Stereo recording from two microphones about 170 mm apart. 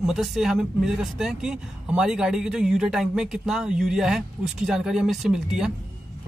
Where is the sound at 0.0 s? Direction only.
Centre (ahead or behind).